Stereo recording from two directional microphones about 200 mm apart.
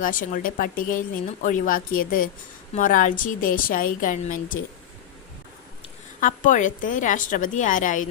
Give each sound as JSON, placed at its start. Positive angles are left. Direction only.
{"t": 0.0, "sound": "speech", "side_deg": 45}
{"t": 6.1, "sound": "a woman's voice", "side_deg": 40}